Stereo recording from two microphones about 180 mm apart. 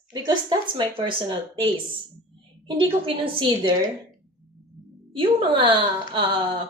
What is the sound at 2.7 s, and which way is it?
A woman's voice, 30° right (ahead or behind).